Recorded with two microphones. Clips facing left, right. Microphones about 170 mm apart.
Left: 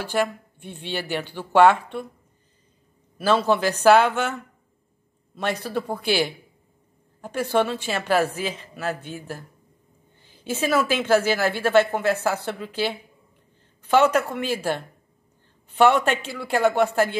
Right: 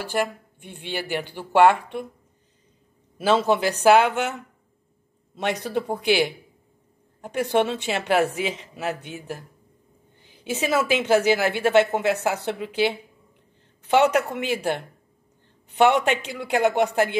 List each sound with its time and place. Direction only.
0.1 s speech: 10° right (ahead or behind)
3.2 s a woman's voice: 20° right (ahead or behind)